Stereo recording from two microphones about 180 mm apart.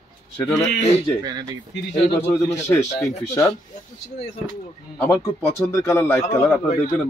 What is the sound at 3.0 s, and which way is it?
Speech, 20° left (ahead or behind).